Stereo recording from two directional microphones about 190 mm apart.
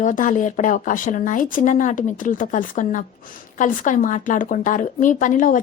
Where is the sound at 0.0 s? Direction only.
45° left (ahead or behind).